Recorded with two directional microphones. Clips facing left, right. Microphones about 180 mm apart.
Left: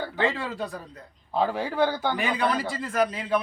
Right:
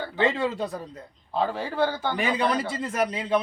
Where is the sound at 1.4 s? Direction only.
15° left (ahead or behind).